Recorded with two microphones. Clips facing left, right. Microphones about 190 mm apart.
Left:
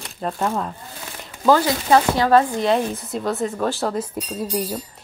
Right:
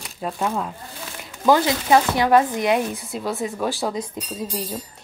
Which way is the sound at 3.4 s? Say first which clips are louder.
Left 2 dB; 15° right (ahead or behind).